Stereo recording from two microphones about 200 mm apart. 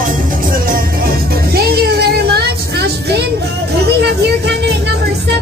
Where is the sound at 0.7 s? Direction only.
50° right (ahead or behind).